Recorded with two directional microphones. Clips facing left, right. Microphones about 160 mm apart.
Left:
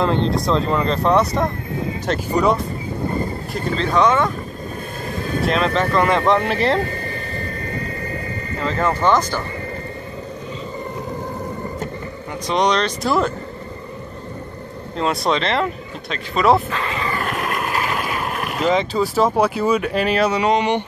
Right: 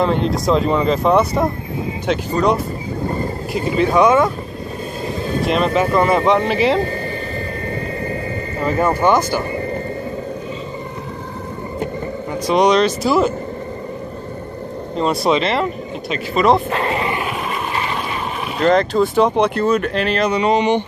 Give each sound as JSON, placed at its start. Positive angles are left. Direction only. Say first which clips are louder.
{"t": 0.0, "sound": "speech", "louder": "right 2 dB", "side_deg": -5}
{"t": 3.5, "sound": "speech", "louder": "right 4 dB", "side_deg": -15}
{"t": 5.4, "sound": "speech", "louder": "right 2 dB", "side_deg": -5}
{"t": 8.5, "sound": "speech", "louder": "right 3 dB", "side_deg": -15}
{"t": 12.4, "sound": "speech", "louder": "right 5 dB", "side_deg": -10}
{"t": 15.0, "sound": "speech", "louder": "right 3 dB", "side_deg": -5}
{"t": 16.7, "sound": "a sound", "louder": "right 5 dB", "side_deg": -35}
{"t": 17.3, "sound": "boat", "louder": "even", "side_deg": 0}